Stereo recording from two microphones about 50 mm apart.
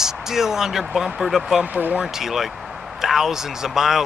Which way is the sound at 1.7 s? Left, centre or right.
Right.